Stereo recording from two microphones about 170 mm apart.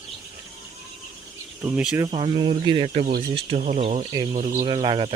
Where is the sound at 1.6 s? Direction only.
15° right (ahead or behind).